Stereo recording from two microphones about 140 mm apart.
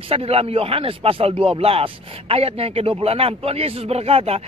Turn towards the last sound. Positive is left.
turn(degrees=-45)  # may be behind; listen again after turning